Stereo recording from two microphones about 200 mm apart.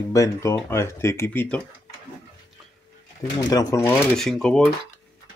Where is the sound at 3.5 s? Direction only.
15° left (ahead or behind).